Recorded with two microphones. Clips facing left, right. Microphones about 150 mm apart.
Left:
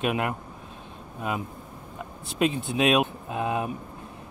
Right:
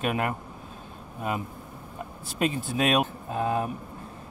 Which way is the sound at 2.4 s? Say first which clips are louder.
Left 2 dB; centre (ahead or behind).